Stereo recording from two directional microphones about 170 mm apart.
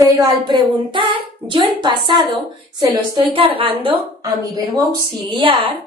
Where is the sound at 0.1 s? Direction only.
25° right (ahead or behind).